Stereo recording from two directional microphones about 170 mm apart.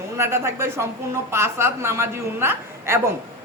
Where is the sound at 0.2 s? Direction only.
15° right (ahead or behind).